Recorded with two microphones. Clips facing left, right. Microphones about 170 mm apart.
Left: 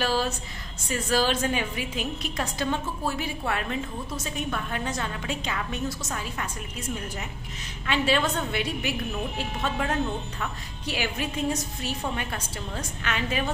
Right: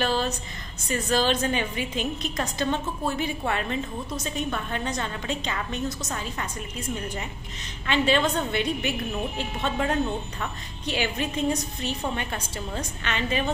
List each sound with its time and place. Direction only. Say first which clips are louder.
0.0 s a sound: right 1 dB; 5° left (ahead or behind)
0.8 s a woman's voice: right 1 dB; 5° left (ahead or behind)
7.8 s a woman's voice: right 2 dB; 5° left (ahead or behind)